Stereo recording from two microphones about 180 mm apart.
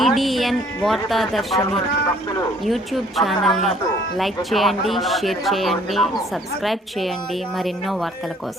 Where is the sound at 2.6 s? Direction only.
Centre (ahead or behind).